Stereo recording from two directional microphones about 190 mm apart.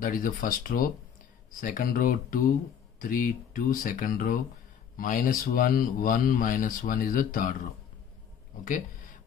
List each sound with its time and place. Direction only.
0.0 s speech: 45° left (ahead or behind)
8.5 s speech: 45° left (ahead or behind)